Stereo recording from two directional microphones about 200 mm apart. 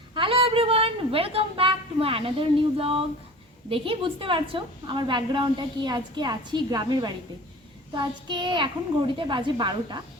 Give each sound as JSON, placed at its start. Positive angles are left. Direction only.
{"t": 0.1, "sound": "a woman's voice", "side_deg": -25}